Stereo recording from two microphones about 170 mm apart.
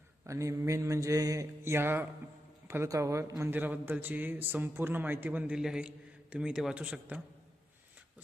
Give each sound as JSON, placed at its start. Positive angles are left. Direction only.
{"t": 0.3, "sound": "a man's voice", "side_deg": -20}